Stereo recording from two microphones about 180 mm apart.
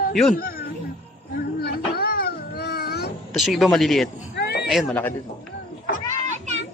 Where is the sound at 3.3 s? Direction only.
Centre (ahead or behind).